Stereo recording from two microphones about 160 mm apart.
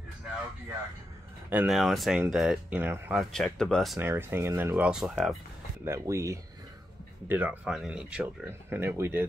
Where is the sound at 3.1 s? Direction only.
Centre (ahead or behind).